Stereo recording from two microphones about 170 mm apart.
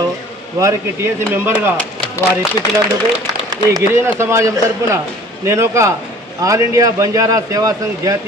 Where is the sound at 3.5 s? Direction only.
20° right (ahead or behind).